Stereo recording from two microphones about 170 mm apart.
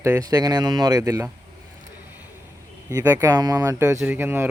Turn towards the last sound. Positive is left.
turn(degrees=-15)  # may be behind; listen again after turning